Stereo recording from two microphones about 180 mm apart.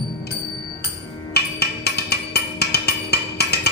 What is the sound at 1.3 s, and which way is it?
Music, 65° left (ahead or behind).